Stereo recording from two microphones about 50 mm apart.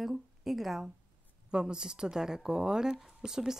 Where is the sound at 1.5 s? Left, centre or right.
Centre.